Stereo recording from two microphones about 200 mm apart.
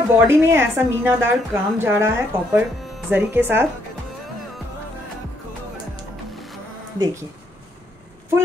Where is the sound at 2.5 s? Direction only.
10° right (ahead or behind).